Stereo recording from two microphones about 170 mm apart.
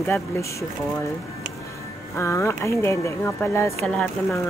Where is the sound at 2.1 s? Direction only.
15° left (ahead or behind).